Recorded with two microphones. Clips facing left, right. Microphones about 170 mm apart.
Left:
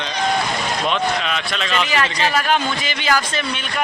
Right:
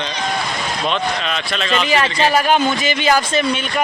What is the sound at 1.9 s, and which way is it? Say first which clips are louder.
A man's voice: right 6 dB; 25° right (ahead or behind).